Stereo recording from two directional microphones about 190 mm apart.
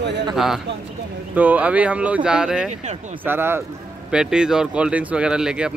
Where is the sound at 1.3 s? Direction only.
10° right (ahead or behind).